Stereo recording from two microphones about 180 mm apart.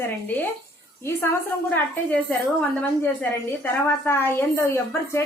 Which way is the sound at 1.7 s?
10° left (ahead or behind).